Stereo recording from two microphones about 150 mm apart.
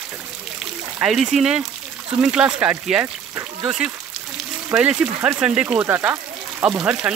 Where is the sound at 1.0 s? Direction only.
5° right (ahead or behind).